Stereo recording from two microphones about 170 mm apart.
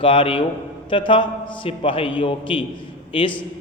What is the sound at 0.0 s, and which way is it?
A man's voice, 30° left (ahead or behind).